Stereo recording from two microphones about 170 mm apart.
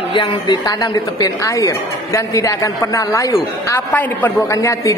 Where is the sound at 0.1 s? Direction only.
30° left (ahead or behind).